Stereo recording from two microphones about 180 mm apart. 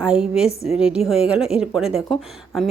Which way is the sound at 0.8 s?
5° right (ahead or behind).